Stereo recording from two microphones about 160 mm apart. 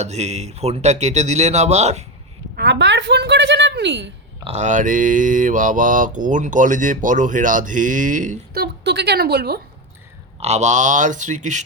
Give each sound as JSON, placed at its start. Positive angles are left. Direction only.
{"t": 0.0, "sound": "speech", "side_deg": -45}
{"t": 2.6, "sound": "a woman's voice", "side_deg": -90}
{"t": 4.5, "sound": "speech", "side_deg": -50}
{"t": 8.6, "sound": "speech", "side_deg": -90}
{"t": 10.4, "sound": "speech", "side_deg": -45}